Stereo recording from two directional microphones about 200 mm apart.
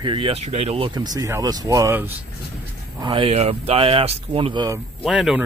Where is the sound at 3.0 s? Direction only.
30° right (ahead or behind).